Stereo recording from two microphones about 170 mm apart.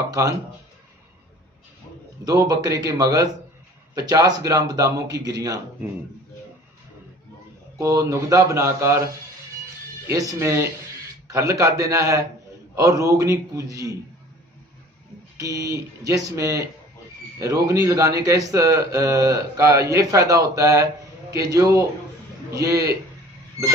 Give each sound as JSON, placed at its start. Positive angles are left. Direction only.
{"t": 0.1, "sound": "a man's voice", "side_deg": -20}
{"t": 2.2, "sound": "a man's voice", "side_deg": -20}
{"t": 7.7, "sound": "speech", "side_deg": -20}
{"t": 10.0, "sound": "a man's voice", "side_deg": -20}
{"t": 15.3, "sound": "a man's voice", "side_deg": -20}